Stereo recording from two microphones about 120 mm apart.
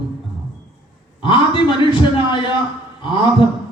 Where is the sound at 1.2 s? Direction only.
45° left (ahead or behind).